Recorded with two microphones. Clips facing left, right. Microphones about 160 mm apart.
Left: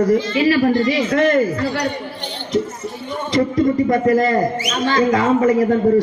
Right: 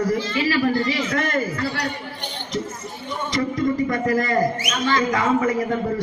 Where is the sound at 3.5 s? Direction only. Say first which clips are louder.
Left 6 dB; 30° left (ahead or behind).